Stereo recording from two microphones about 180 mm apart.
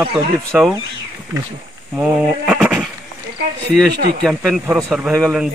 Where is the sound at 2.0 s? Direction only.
5° right (ahead or behind).